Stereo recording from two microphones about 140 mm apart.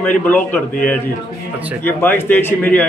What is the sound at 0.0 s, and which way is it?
Speech, 10° left (ahead or behind).